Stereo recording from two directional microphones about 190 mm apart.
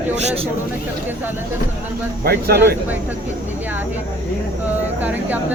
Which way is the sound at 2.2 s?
55° right (ahead or behind).